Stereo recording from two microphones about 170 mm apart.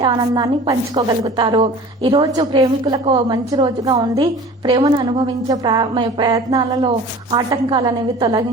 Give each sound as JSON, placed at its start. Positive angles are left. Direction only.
{"t": 0.0, "sound": "a woman's voice", "side_deg": -25}